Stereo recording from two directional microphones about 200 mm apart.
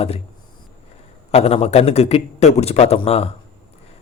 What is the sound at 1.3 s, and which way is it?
Speech, 30° left (ahead or behind).